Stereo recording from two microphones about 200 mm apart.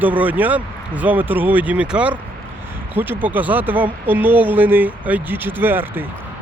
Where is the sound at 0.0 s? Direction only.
10° right (ahead or behind).